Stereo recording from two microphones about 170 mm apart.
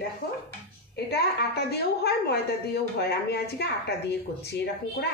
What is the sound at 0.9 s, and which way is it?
A woman's voice, 70° left (ahead or behind).